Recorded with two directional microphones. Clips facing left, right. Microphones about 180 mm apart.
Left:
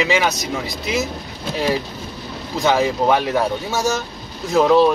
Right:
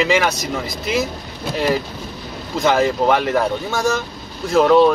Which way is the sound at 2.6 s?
Centre (ahead or behind).